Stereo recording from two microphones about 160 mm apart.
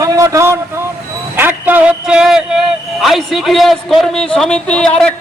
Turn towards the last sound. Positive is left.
turn(degrees=5)  # may be behind; listen again after turning